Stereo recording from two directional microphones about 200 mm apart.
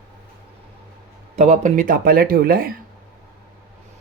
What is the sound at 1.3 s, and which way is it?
Speech, 35° right (ahead or behind).